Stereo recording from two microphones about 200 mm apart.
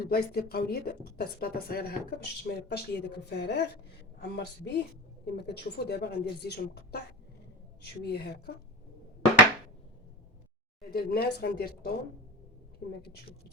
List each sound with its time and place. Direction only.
0.1 s a woman's voice: 50° left (ahead or behind)
8.1 s a woman's voice: 55° left (ahead or behind)
10.9 s a woman's voice: 50° left (ahead or behind)